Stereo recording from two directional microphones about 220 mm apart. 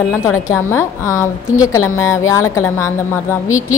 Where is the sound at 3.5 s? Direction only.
70° left (ahead or behind).